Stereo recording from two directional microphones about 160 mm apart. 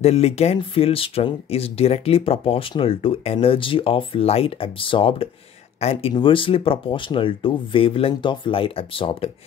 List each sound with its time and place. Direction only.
0.0 s speech: 40° left (ahead or behind)